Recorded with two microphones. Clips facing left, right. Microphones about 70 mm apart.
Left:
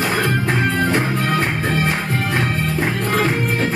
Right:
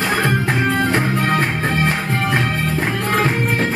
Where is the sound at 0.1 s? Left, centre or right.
Right.